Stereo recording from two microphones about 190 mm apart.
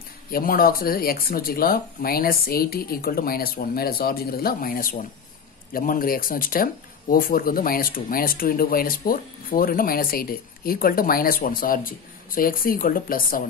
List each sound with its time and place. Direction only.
0.3 s speech: 50° left (ahead or behind)